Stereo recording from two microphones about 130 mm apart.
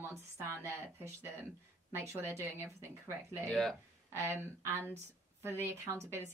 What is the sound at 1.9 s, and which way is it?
Speech, 20° right (ahead or behind).